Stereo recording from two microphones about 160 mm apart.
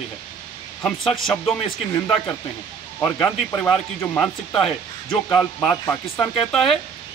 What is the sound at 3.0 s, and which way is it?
Speech, 5° left (ahead or behind).